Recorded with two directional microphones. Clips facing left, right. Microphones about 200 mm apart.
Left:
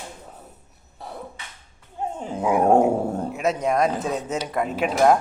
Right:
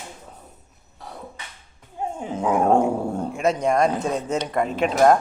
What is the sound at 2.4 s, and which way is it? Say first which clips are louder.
Speech: left 1 dB; 10° left (ahead or behind).